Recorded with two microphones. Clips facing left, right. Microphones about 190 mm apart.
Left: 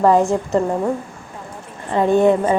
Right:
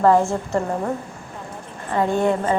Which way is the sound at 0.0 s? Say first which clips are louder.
Left 2 dB; 15° left (ahead or behind).